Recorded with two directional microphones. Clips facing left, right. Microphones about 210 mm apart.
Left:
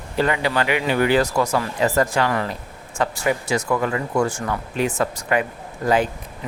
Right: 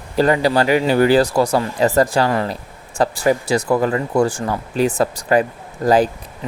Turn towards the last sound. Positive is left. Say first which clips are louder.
# right 5 dB
turn(degrees=-35)  # may be behind; listen again after turning